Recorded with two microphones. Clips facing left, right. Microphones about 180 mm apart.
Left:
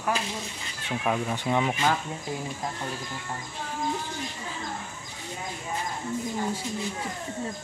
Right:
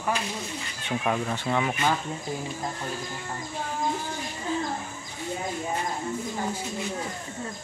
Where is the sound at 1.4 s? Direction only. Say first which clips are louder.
Left 1 dB; 15° left (ahead or behind).